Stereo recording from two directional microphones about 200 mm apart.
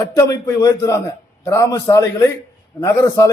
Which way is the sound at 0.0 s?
20° left (ahead or behind).